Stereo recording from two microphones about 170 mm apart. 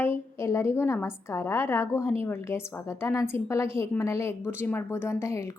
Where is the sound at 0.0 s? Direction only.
15° left (ahead or behind).